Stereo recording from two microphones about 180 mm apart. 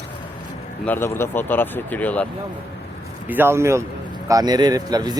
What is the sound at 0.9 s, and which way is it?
Speech, 10° left (ahead or behind).